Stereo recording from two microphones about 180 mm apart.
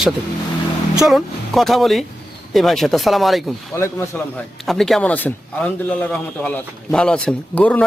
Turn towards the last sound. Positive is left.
turn(degrees=5)  # may be behind; listen again after turning